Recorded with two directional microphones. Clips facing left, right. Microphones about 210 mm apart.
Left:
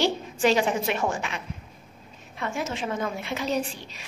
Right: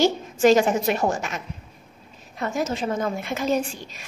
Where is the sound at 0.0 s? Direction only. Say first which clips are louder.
Right 5 dB; 45° right (ahead or behind).